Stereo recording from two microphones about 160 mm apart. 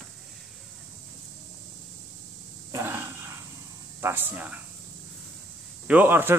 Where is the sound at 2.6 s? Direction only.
15° right (ahead or behind).